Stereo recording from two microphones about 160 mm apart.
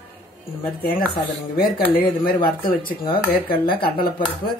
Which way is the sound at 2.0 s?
70° left (ahead or behind).